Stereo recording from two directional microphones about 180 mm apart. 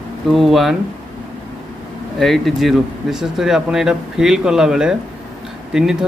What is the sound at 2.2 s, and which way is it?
Speech, centre (ahead or behind).